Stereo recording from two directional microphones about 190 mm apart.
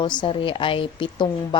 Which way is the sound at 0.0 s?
25° left (ahead or behind).